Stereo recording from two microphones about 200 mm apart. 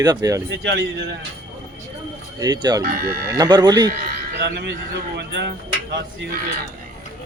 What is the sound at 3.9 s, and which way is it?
A man's voice, 55° right (ahead or behind).